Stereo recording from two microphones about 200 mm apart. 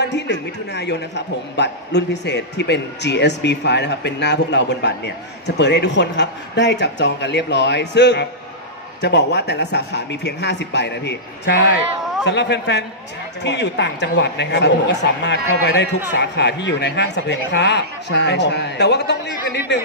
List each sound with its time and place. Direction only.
0.0 s a man's voice: 60° left (ahead or behind)